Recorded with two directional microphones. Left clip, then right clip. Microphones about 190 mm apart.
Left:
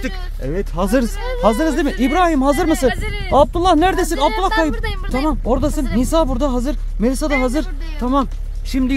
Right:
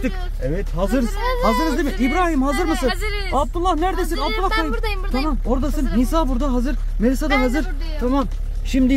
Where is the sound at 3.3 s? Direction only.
50° left (ahead or behind).